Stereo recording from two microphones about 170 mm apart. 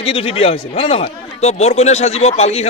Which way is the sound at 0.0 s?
35° left (ahead or behind).